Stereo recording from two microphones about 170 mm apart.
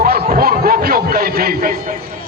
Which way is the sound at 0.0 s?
60° right (ahead or behind).